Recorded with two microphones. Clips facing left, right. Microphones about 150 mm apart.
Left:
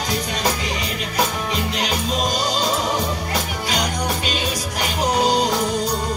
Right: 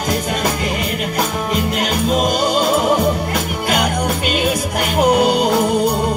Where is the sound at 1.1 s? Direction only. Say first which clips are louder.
Right 1 dB; 50° right (ahead or behind).